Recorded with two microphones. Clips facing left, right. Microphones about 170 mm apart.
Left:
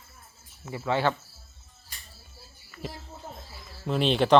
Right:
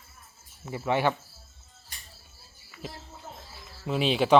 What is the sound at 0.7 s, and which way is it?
Speech, 20° right (ahead or behind).